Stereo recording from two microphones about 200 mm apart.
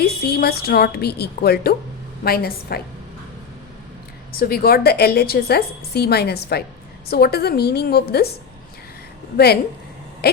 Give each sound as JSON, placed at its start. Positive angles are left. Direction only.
{"t": 0.0, "sound": "a woman's voice", "side_deg": 50}
{"t": 4.4, "sound": "a woman's voice", "side_deg": 50}
{"t": 10.2, "sound": "owl", "side_deg": 50}